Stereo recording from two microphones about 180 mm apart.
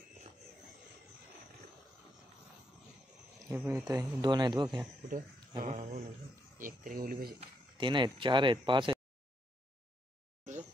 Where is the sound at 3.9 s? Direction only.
20° right (ahead or behind).